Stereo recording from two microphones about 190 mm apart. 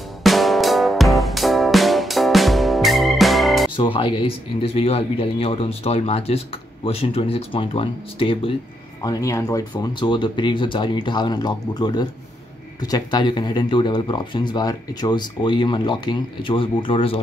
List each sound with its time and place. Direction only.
0.2 s music: centre (ahead or behind)
3.7 s speech: 25° left (ahead or behind)
9.0 s speech: 15° left (ahead or behind)